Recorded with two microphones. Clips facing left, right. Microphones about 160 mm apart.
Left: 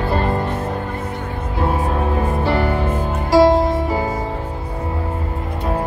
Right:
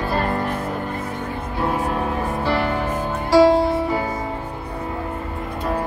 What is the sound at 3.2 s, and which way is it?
Music, 20° left (ahead or behind).